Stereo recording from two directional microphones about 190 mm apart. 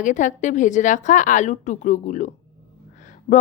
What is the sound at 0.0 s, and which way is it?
A woman's voice, 40° left (ahead or behind).